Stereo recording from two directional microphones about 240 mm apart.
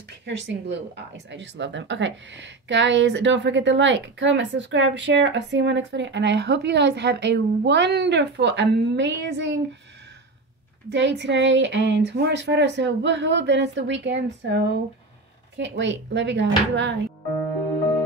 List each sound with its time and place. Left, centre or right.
0.2 s speech: right
10.9 s speech: right